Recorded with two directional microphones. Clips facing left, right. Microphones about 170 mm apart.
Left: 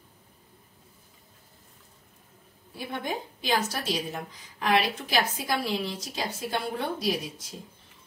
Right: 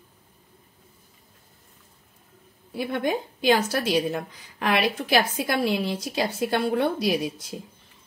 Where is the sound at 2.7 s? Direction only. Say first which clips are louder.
Right 7 dB; 70° right (ahead or behind).